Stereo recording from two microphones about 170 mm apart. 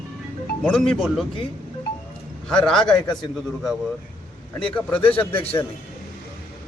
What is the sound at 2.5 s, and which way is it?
Speech, 5° left (ahead or behind).